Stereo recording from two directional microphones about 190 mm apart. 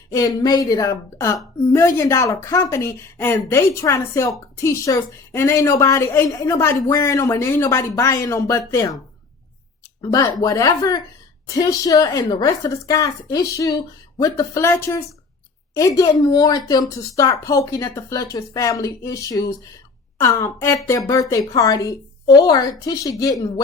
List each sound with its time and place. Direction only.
0.1 s speech: 20° left (ahead or behind)
10.0 s a woman's voice: 20° left (ahead or behind)